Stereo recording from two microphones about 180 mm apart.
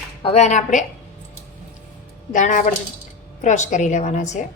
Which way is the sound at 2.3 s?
45° left (ahead or behind).